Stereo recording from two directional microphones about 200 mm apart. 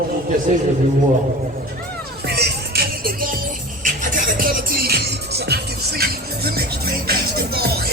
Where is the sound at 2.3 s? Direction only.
50° right (ahead or behind).